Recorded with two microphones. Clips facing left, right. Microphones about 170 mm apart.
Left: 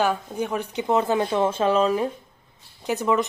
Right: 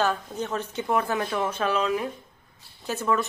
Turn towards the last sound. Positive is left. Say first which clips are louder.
# left 4 dB
turn(degrees=15)  # may be behind; listen again after turning